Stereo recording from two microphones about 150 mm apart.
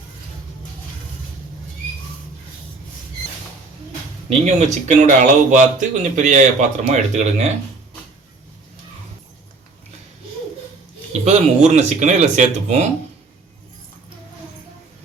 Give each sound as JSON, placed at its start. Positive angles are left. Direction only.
{"t": 4.3, "sound": "speech", "side_deg": -50}
{"t": 11.3, "sound": "speech", "side_deg": -50}